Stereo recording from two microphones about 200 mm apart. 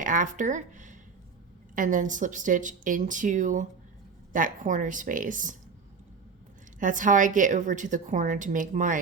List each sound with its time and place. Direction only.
0.0 s a woman's voice: 40° right (ahead or behind)
6.7 s a woman's voice: 40° right (ahead or behind)